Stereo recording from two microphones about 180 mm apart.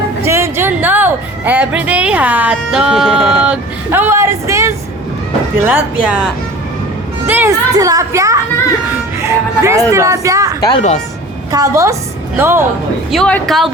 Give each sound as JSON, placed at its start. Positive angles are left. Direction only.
{"t": 0.2, "sound": "a woman's voice", "side_deg": -15}
{"t": 7.3, "sound": "a woman's voice", "side_deg": -10}
{"t": 10.6, "sound": "a woman's voice", "side_deg": 25}
{"t": 11.5, "sound": "a woman's voice", "side_deg": -20}
{"t": 13.1, "sound": "speech", "side_deg": 5}